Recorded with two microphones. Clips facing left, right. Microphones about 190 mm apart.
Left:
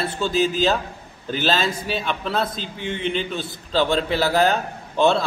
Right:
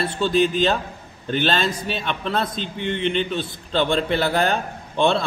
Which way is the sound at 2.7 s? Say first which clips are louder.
Right 4 dB; 60° right (ahead or behind).